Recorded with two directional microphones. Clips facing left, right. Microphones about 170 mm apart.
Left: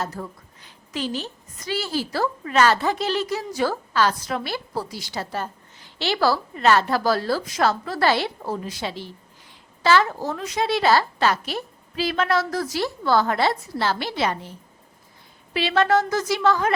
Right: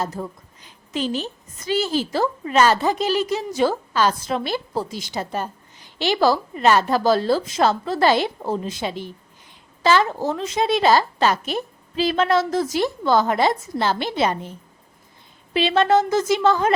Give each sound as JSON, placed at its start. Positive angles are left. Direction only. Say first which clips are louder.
{"t": 0.0, "sound": "a woman's voice", "louder": "right 3 dB", "side_deg": -15}
{"t": 15.5, "sound": "a woman's voice", "louder": "right 3 dB", "side_deg": -25}